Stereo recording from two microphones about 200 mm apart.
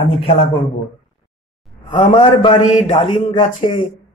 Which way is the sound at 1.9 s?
25° left (ahead or behind).